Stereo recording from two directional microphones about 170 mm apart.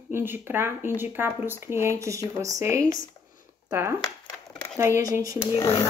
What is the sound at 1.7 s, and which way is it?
Speech, 15° right (ahead or behind).